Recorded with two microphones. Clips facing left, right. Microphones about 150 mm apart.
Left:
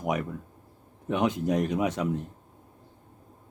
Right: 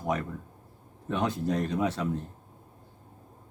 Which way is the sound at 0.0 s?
15° left (ahead or behind).